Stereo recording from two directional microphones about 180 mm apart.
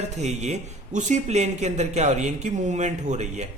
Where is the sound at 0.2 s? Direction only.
40° right (ahead or behind).